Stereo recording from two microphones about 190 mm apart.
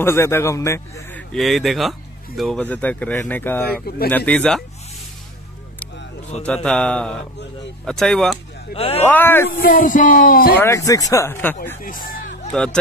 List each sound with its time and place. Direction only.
0.0 s speech: 15° left (ahead or behind)
1.3 s speech: centre (ahead or behind)
3.6 s speech: 55° left (ahead or behind)
4.3 s mantra: 5° left (ahead or behind)
6.4 s mantra: 5° left (ahead or behind)
8.7 s speech: 30° left (ahead or behind)
9.0 s speech: 10° left (ahead or behind)
9.8 s speech: 45° left (ahead or behind)
10.6 s speech: 15° left (ahead or behind)
11.8 s speech: 45° left (ahead or behind)